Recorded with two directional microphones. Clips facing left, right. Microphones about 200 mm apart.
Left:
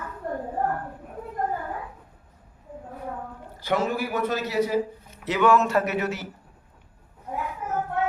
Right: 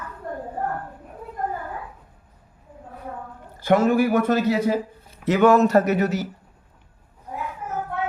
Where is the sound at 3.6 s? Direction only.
50° right (ahead or behind).